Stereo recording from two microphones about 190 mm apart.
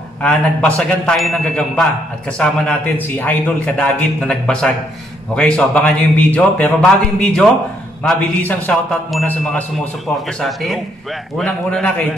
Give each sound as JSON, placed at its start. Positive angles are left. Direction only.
{"t": 0.2, "sound": "a man's voice", "side_deg": 5}